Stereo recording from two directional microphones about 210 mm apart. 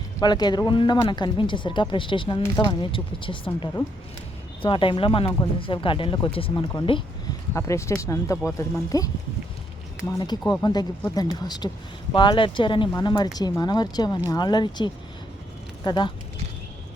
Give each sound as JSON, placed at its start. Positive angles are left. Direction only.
{"t": 0.2, "sound": "speech", "side_deg": 20}
{"t": 7.5, "sound": "speech", "side_deg": 15}